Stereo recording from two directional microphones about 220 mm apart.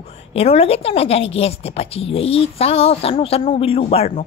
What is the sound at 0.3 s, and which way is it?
A woman's voice, 25° left (ahead or behind).